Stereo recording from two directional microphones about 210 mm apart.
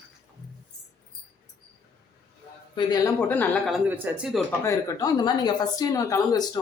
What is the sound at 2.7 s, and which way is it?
Speech, 20° left (ahead or behind).